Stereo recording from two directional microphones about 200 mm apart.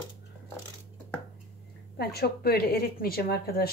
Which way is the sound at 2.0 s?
50° left (ahead or behind).